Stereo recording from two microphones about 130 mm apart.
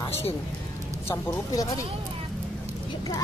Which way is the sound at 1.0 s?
25° left (ahead or behind).